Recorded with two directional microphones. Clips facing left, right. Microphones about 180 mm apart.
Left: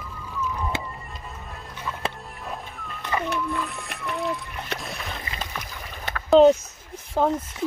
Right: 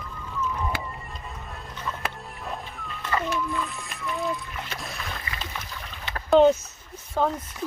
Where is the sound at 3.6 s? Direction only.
65° left (ahead or behind).